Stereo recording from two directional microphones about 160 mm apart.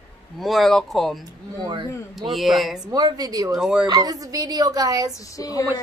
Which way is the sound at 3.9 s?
20° right (ahead or behind).